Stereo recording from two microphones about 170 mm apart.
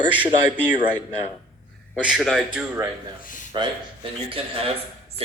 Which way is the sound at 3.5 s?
30° right (ahead or behind).